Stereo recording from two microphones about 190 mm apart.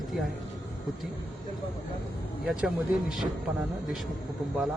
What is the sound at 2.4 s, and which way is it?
Speech, 5° right (ahead or behind).